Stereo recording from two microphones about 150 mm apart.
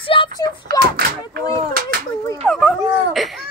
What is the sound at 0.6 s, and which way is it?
Speech, 80° right.